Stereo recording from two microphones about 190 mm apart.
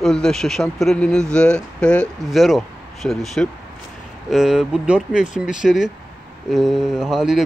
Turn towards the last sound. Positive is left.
turn(degrees=-5)  # may be behind; listen again after turning